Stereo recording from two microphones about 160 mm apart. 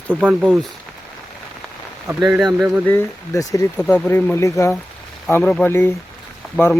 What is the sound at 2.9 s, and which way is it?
Speech, 15° left (ahead or behind).